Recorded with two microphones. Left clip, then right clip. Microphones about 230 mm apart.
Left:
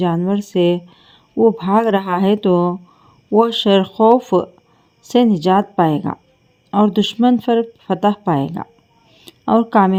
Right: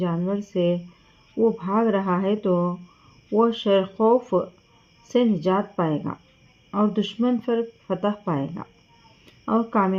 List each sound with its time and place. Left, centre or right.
0.0 s a woman's voice: left